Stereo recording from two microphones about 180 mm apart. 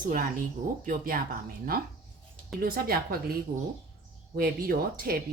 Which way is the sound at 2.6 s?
55° right (ahead or behind).